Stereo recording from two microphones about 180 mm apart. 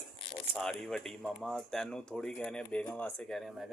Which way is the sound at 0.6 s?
5° left (ahead or behind).